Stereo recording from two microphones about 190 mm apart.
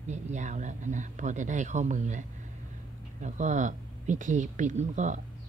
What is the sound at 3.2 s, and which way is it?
A woman's voice, 40° right (ahead or behind).